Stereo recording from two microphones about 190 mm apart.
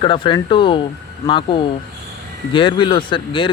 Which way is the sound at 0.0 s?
25° left (ahead or behind).